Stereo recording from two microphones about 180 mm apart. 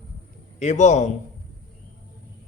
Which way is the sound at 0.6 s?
40° left (ahead or behind).